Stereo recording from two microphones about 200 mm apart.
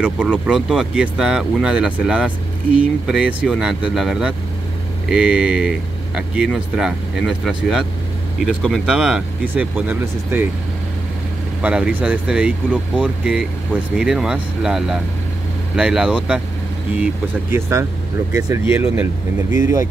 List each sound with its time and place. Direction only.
0.0 s speech: 5° right (ahead or behind)
11.6 s speech: 5° right (ahead or behind)